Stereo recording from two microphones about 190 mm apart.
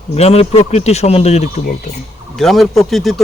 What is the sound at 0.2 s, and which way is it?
Speech, 35° left (ahead or behind).